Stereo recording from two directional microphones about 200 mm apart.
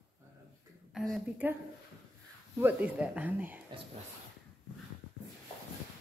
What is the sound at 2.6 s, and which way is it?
Speech, 5° right (ahead or behind).